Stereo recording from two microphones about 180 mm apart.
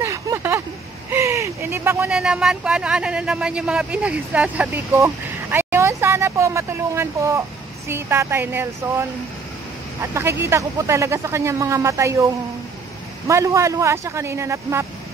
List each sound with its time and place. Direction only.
0.0 s vehicle: 15° right (ahead or behind)
1.1 s speech: 15° right (ahead or behind)
10.1 s speech: 15° right (ahead or behind)
13.3 s speech: 15° right (ahead or behind)